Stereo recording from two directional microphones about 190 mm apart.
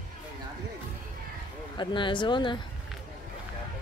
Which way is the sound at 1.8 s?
25° left (ahead or behind).